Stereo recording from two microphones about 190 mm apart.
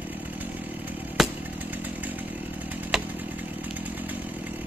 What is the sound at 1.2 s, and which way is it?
Chainsaw, centre (ahead or behind).